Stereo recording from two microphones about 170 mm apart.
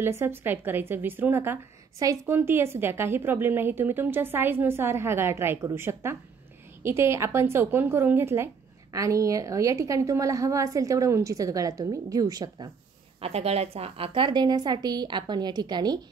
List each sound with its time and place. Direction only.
0.0 s a woman's voice: 15° right (ahead or behind)
13.2 s a woman's voice: 35° right (ahead or behind)